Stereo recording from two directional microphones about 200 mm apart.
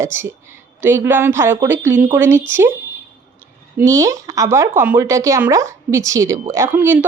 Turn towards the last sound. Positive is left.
turn(degrees=-10)  # may be behind; listen again after turning